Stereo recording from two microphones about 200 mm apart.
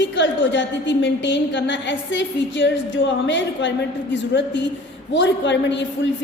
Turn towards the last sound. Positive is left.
turn(degrees=65)  # may be behind; listen again after turning